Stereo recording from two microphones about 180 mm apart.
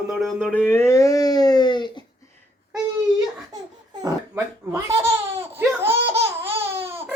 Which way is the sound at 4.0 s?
15° right (ahead or behind).